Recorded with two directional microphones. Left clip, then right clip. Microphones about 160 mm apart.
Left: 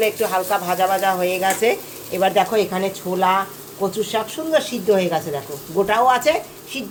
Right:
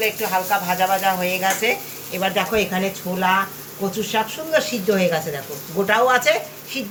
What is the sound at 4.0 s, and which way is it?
Speech, 65° left (ahead or behind).